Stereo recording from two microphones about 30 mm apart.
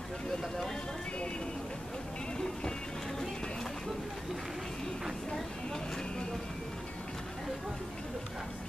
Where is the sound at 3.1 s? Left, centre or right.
Centre.